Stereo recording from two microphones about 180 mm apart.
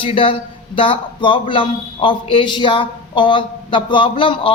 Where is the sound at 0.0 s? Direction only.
30° left (ahead or behind).